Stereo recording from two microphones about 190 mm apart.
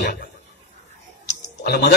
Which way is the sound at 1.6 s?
60° left (ahead or behind).